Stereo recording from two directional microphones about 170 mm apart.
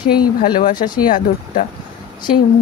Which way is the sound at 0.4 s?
55° left (ahead or behind).